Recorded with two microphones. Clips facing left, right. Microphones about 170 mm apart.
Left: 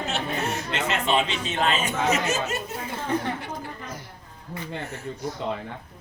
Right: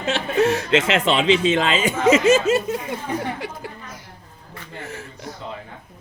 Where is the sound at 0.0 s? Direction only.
90° right.